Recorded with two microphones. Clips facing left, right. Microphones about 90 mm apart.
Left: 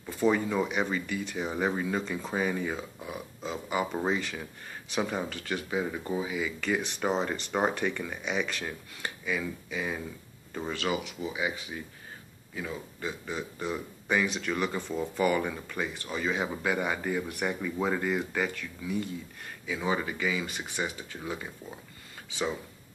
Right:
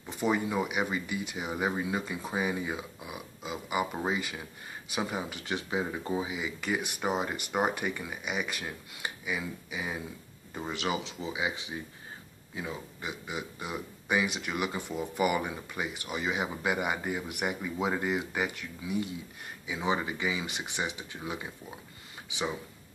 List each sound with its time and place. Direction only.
0.0 s a man's voice: 15° right (ahead or behind)